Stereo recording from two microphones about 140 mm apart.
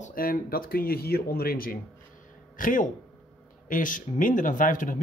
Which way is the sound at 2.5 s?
70° left (ahead or behind).